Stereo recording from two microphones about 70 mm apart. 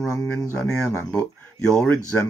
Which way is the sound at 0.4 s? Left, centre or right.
Centre.